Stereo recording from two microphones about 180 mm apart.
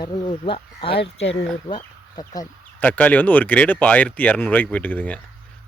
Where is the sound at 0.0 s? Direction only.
30° left (ahead or behind).